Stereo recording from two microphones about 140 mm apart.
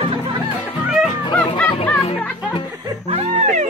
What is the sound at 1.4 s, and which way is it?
Music, 10° left (ahead or behind).